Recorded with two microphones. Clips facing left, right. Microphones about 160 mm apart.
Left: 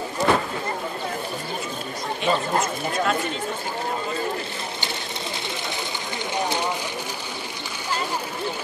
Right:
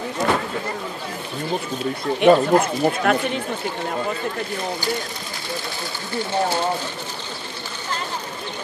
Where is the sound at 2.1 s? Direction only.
60° right (ahead or behind).